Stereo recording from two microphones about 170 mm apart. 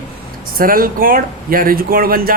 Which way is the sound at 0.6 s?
55° right (ahead or behind).